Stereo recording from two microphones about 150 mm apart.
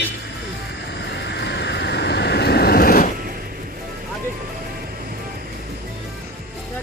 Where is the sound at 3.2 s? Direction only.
80° right.